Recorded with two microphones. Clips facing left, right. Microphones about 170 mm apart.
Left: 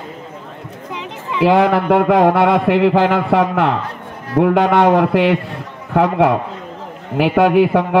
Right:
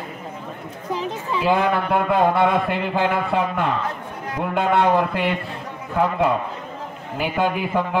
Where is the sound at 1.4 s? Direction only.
85° left.